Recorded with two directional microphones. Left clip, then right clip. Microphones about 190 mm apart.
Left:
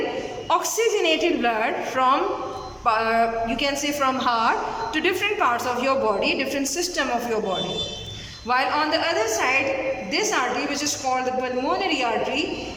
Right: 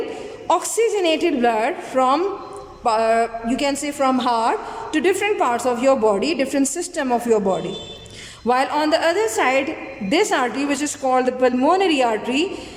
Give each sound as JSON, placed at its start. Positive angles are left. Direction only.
{"t": 0.4, "sound": "a woman's voice", "side_deg": -30}